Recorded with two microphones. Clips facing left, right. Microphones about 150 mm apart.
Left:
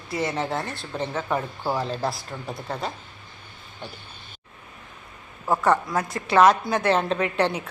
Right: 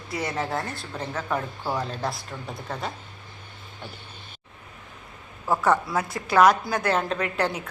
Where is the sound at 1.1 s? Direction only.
5° left (ahead or behind).